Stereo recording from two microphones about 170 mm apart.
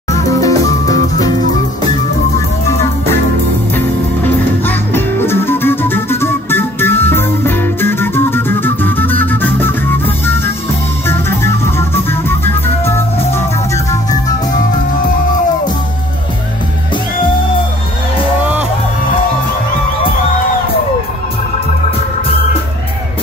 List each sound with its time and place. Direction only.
0.1 s music: 20° left (ahead or behind)
4.6 s music: 15° left (ahead or behind)